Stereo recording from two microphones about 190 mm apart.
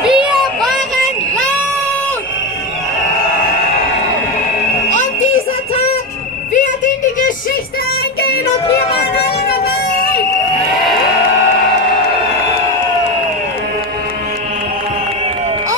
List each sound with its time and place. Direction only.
0.0 s music: 5° right (ahead or behind)
8.6 s music: 35° left (ahead or behind)
9.1 s a sound: 55° left (ahead or behind)